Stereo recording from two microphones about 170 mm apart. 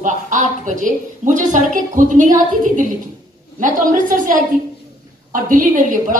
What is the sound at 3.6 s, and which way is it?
A woman's voice, 50° right (ahead or behind).